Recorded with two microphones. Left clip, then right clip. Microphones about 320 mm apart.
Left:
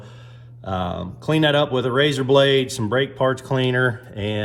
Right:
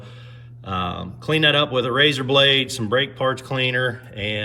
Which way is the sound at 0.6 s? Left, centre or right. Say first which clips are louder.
Even; centre.